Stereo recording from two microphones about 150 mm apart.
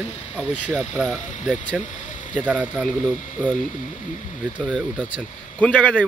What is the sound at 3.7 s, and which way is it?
Speech, 55° left (ahead or behind).